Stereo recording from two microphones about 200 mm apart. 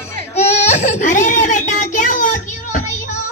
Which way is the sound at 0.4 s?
35° left (ahead or behind).